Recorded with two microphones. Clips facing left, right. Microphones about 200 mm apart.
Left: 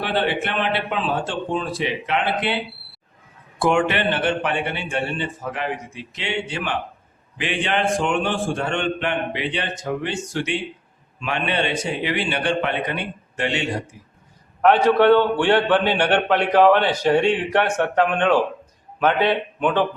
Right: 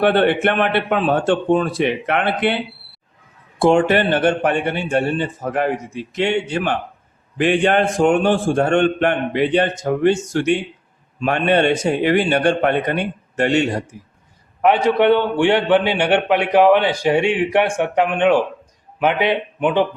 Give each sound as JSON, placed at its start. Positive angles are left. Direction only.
{"t": 0.0, "sound": "a man's voice", "side_deg": -55}
{"t": 3.6, "sound": "a man's voice", "side_deg": -35}
{"t": 14.6, "sound": "a man's voice", "side_deg": -15}